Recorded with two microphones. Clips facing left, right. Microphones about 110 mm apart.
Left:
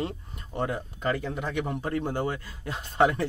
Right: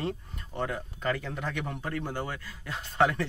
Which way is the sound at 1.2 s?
10° left (ahead or behind).